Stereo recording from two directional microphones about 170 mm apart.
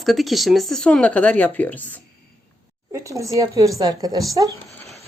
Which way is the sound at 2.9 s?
15° right (ahead or behind).